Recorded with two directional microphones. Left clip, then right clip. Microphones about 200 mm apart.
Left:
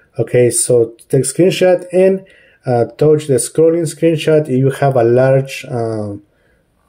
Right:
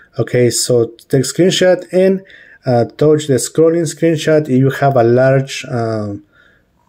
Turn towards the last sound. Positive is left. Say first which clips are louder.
# right 1 dB
turn(degrees=-25)  # may be behind; listen again after turning